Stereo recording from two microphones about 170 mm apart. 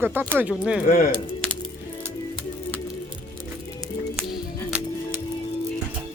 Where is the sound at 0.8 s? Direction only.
55° left (ahead or behind).